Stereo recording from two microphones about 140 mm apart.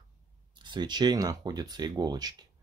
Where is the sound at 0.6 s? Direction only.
35° right (ahead or behind).